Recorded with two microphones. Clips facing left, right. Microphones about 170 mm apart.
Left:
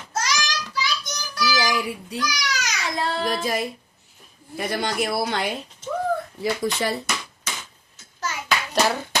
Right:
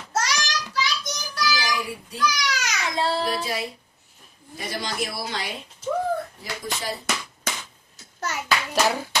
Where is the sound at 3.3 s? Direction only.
45° left (ahead or behind).